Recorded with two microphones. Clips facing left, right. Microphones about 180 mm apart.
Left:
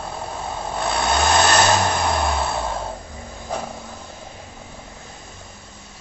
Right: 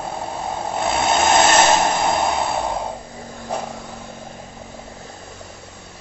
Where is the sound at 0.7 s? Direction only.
20° right (ahead or behind).